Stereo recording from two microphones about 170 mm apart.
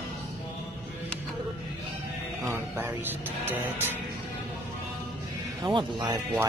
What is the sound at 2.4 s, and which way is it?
Speech, 15° right (ahead or behind).